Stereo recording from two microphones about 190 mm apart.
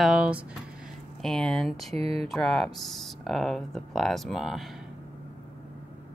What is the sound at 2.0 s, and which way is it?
Speech, 30° right (ahead or behind).